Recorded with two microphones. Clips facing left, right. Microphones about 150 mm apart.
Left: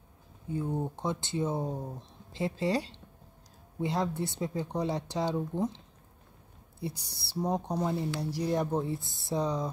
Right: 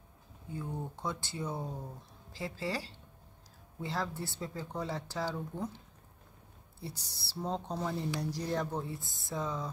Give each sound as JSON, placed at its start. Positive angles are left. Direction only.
{"t": 0.5, "sound": "speech", "side_deg": 20}
{"t": 6.8, "sound": "speech", "side_deg": 15}